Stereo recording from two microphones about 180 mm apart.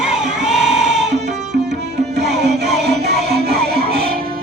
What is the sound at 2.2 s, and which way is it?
Music, 65° right (ahead or behind).